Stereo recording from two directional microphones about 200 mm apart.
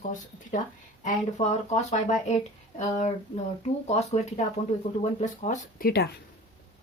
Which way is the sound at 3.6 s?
35° left (ahead or behind).